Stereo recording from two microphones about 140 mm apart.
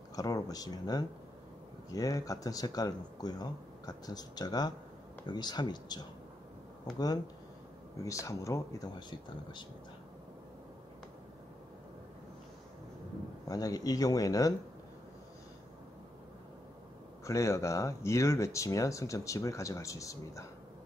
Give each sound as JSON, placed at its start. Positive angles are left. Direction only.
{"t": 0.1, "sound": "speech", "side_deg": 25}
{"t": 8.0, "sound": "speech", "side_deg": 20}
{"t": 13.5, "sound": "speech", "side_deg": 25}
{"t": 17.2, "sound": "speech", "side_deg": 20}